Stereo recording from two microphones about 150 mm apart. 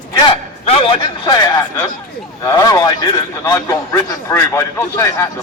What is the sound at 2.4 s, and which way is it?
A man's voice, 20° left (ahead or behind).